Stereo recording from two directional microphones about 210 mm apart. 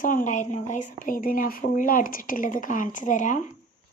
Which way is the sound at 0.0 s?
40° left (ahead or behind).